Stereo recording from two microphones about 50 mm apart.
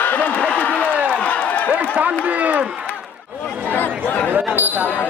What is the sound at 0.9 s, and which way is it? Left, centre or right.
Run, right.